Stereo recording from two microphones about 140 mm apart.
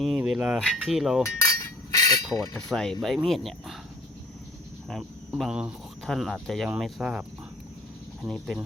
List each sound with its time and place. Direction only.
0.0 s speech: centre (ahead or behind)
1.5 s a sound: 25° left (ahead or behind)
2.6 s speech: 5° left (ahead or behind)
4.9 s speech: centre (ahead or behind)